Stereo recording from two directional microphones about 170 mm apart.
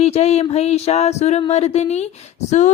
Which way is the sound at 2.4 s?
45° left (ahead or behind).